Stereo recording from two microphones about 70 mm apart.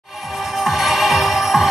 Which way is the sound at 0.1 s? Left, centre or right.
Centre.